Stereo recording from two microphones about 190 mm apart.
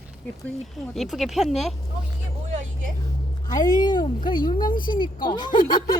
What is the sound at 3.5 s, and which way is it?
Speech, 20° left (ahead or behind).